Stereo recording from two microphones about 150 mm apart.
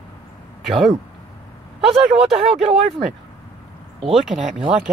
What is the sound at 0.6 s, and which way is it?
Speech, centre (ahead or behind).